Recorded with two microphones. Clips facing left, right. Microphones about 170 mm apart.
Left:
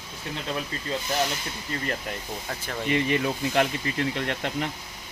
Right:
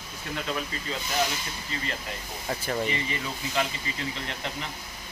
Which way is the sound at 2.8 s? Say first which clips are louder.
Left 7 dB; 60° left (ahead or behind).